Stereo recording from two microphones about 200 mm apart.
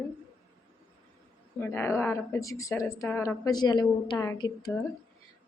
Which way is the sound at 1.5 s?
10° left (ahead or behind).